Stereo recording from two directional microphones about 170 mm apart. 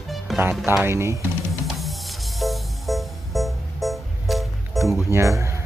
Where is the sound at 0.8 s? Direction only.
15° right (ahead or behind).